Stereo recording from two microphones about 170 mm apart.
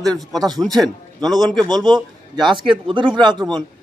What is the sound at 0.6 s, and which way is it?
Speech, centre (ahead or behind).